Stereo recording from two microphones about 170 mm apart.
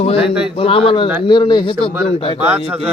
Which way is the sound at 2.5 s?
10° right (ahead or behind).